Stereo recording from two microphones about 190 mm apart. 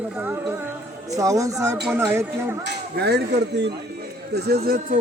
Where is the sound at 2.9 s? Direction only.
60° right (ahead or behind).